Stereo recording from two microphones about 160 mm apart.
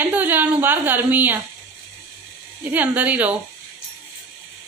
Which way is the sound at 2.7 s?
10° right (ahead or behind).